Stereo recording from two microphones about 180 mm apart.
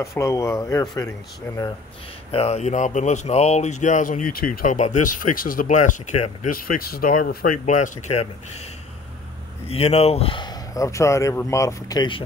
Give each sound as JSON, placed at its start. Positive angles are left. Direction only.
{"t": 0.0, "sound": "speech", "side_deg": 15}
{"t": 2.3, "sound": "speech", "side_deg": 35}
{"t": 6.5, "sound": "speech", "side_deg": 55}
{"t": 9.7, "sound": "speech", "side_deg": 35}